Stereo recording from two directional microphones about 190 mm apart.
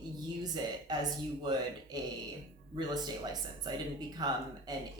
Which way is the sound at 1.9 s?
20° right (ahead or behind).